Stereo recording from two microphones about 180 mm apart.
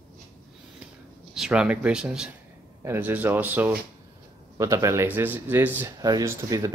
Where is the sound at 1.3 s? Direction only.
5° right (ahead or behind).